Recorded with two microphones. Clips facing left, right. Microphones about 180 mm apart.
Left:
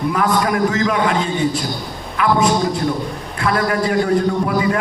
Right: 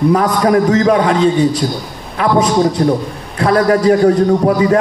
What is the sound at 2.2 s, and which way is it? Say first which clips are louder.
Speech: right 2 dB; 30° right (ahead or behind).